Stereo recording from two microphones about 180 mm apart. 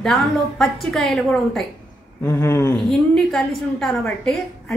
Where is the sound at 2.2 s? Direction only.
15° left (ahead or behind).